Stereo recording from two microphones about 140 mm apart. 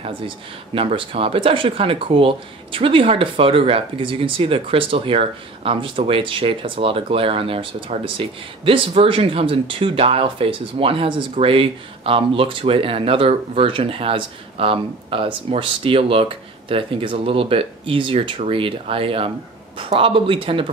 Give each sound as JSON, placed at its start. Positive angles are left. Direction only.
{"t": 0.7, "sound": "speech", "side_deg": -45}